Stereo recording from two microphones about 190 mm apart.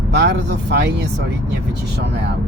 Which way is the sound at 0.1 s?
65° right (ahead or behind).